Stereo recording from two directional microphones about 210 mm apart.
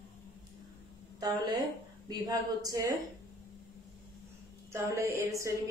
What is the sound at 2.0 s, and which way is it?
Speech, 20° right (ahead or behind).